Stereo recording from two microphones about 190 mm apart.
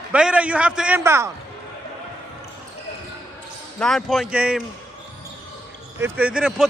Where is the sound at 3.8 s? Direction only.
Centre (ahead or behind).